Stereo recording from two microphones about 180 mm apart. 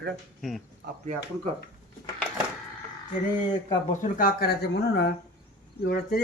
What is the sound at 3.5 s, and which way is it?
Speech, 45° left (ahead or behind).